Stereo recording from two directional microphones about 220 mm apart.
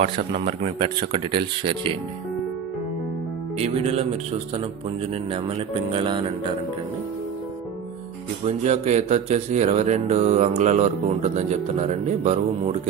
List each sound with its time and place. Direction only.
0.0 s speech: 30° right (ahead or behind)
3.5 s speech: 30° right (ahead or behind)
5.9 s speech: 25° right (ahead or behind)
8.5 s speech: 30° right (ahead or behind)